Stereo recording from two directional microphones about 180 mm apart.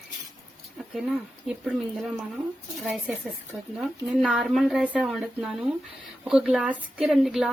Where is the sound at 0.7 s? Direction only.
Centre (ahead or behind).